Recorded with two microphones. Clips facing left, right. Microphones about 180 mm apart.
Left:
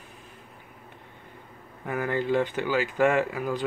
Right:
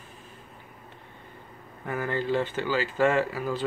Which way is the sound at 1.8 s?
10° left (ahead or behind).